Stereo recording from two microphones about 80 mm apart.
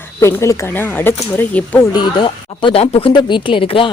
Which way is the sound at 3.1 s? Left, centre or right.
Left.